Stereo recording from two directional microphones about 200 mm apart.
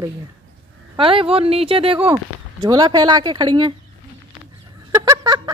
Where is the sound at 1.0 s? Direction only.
25° right (ahead or behind).